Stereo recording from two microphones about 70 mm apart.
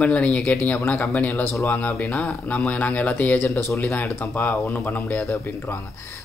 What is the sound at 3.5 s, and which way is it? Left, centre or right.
Speech, left.